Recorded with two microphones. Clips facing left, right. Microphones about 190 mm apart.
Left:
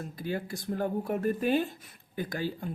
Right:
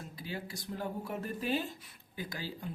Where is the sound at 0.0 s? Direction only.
50° left (ahead or behind).